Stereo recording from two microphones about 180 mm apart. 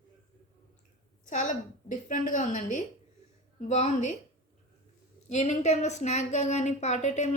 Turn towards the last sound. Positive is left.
turn(degrees=40)  # may be behind; listen again after turning